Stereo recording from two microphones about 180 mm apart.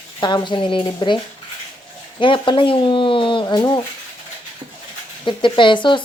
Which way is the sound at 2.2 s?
25° left (ahead or behind).